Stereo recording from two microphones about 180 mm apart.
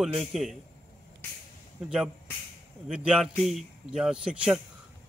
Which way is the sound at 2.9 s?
5° right (ahead or behind).